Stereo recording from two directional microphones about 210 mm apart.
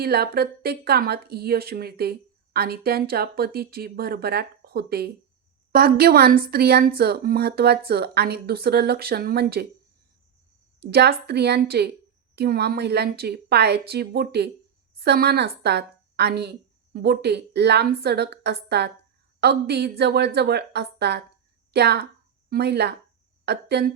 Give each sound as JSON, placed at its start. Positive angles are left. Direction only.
{"t": 0.0, "sound": "speech", "side_deg": -50}
{"t": 10.8, "sound": "a woman's voice", "side_deg": -50}